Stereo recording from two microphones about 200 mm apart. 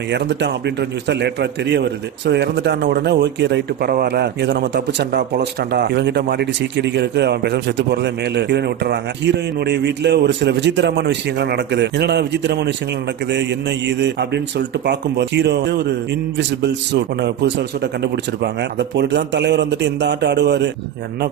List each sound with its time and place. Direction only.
0.1 s a man's voice: 60° right (ahead or behind)